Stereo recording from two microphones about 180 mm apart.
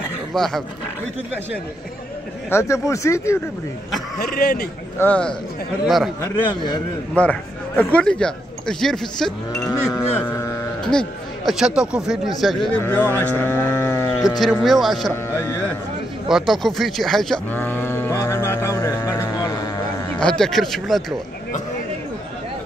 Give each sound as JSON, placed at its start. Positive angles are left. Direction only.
{"t": 0.3, "sound": "speech", "side_deg": 0}
{"t": 2.5, "sound": "speech", "side_deg": 15}
{"t": 4.2, "sound": "speech", "side_deg": 60}
{"t": 4.9, "sound": "speech", "side_deg": 10}
{"t": 6.2, "sound": "a man's voice", "side_deg": 25}
{"t": 7.2, "sound": "speech", "side_deg": 10}
{"t": 9.5, "sound": "speech", "side_deg": 15}
{"t": 10.8, "sound": "speech", "side_deg": 5}
{"t": 12.8, "sound": "speech", "side_deg": 10}
{"t": 14.4, "sound": "speech", "side_deg": 0}
{"t": 15.2, "sound": "speech", "side_deg": 10}
{"t": 16.3, "sound": "sheep", "side_deg": 0}
{"t": 20.2, "sound": "speech", "side_deg": 5}